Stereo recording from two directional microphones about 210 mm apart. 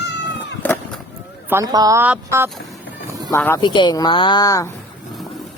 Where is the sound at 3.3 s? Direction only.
10° left (ahead or behind).